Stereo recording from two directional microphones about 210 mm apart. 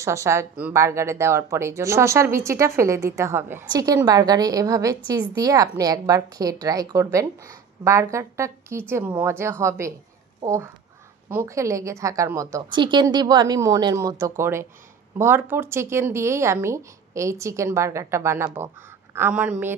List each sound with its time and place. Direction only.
0.0 s speech: 15° right (ahead or behind)